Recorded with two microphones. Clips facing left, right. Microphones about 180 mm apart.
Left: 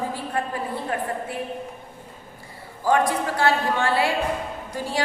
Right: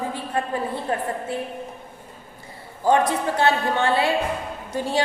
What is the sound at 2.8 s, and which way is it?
A woman's voice, 20° right (ahead or behind).